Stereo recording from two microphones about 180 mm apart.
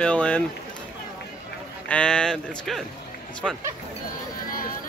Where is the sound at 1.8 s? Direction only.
5° left (ahead or behind).